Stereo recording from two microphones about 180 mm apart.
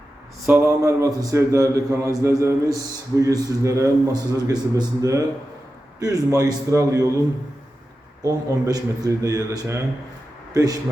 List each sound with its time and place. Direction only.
0.4 s a man's voice: 10° right (ahead or behind)
8.2 s a man's voice: 20° right (ahead or behind)